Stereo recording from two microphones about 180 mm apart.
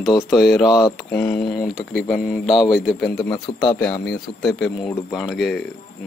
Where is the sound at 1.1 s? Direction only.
10° left (ahead or behind).